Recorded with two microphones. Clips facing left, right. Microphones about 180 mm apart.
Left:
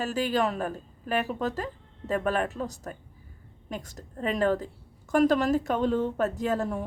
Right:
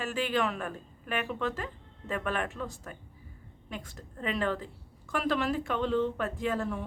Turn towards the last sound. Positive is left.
turn(degrees=40)  # may be behind; listen again after turning